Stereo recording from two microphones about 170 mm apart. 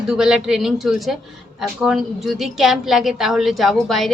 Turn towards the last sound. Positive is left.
turn(degrees=0)  # may be behind; listen again after turning